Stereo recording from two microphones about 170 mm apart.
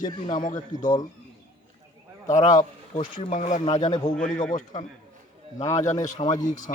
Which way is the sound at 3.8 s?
25° left (ahead or behind).